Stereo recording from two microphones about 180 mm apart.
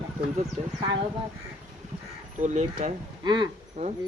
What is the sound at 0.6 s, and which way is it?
Speech, 35° right (ahead or behind).